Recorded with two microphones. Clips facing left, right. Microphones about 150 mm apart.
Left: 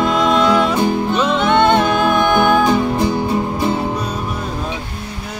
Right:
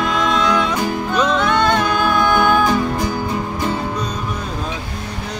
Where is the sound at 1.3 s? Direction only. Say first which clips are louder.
Left 6 dB; 25° left (ahead or behind).